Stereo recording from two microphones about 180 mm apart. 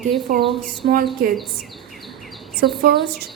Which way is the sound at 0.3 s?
45° right (ahead or behind).